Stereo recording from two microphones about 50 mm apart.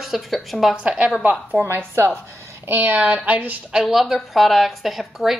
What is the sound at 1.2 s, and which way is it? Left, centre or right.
Speech, right.